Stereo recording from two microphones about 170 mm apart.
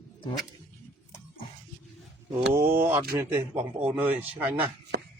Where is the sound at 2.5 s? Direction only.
15° right (ahead or behind).